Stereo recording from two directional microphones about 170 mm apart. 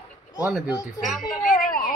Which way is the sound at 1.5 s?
55° left (ahead or behind).